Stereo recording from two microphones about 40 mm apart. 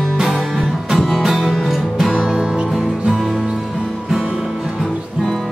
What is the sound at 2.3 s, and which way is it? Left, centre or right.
Music, right.